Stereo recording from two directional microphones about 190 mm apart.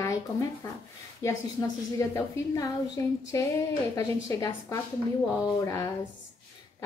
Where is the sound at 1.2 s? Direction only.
15° left (ahead or behind).